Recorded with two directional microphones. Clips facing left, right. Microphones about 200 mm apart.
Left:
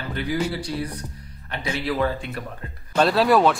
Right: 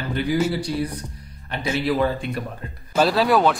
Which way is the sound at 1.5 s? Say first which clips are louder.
Right 4 dB; 15° right (ahead or behind).